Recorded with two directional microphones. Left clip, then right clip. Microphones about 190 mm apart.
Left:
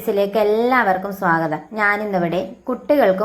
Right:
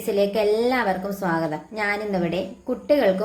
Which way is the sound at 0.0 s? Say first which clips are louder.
Left 3 dB; 10° left (ahead or behind).